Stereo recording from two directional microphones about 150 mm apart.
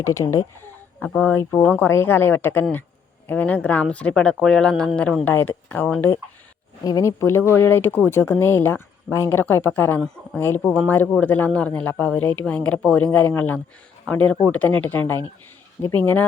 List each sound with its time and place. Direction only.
0.0 s speech: 20° left (ahead or behind)